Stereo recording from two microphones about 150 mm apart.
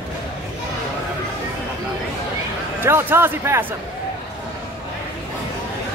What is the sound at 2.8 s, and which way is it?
Speech, 15° right (ahead or behind).